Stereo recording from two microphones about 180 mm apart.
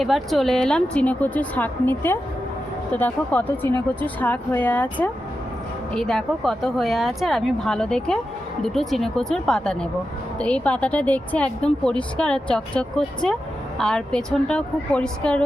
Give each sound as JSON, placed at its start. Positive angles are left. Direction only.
{"t": 0.0, "sound": "a woman's voice", "side_deg": 0}